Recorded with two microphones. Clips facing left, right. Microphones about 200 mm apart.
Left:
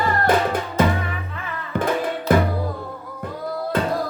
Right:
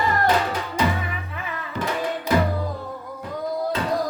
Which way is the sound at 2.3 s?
55° left (ahead or behind).